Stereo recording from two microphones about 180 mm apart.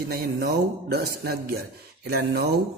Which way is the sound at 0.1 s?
60° right (ahead or behind).